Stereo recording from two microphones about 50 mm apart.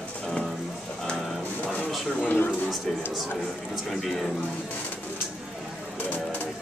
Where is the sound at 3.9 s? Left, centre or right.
Centre.